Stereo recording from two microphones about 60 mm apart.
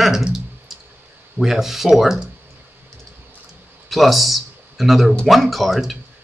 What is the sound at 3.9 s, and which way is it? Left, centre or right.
Speech, centre.